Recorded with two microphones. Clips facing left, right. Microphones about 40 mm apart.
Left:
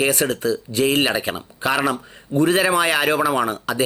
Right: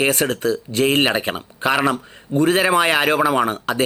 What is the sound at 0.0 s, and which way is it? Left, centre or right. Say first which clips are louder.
Speech: right 1 dB; right.